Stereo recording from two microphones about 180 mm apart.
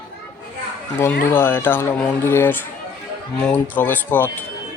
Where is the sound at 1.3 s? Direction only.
10° left (ahead or behind).